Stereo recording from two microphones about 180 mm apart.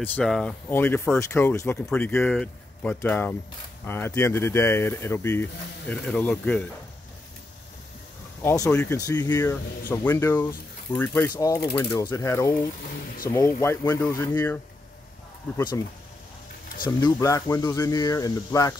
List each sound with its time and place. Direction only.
0.0 s speech: 5° left (ahead or behind)
8.4 s speech: 15° left (ahead or behind)
15.5 s speech: 20° left (ahead or behind)
16.8 s speech: 20° left (ahead or behind)